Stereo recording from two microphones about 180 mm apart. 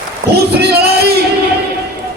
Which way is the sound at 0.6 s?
65° right (ahead or behind).